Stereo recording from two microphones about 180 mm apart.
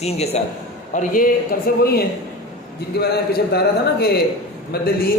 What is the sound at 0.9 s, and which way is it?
A man's voice, 50° left (ahead or behind).